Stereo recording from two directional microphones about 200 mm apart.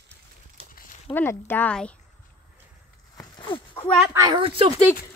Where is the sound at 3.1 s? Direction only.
20° left (ahead or behind).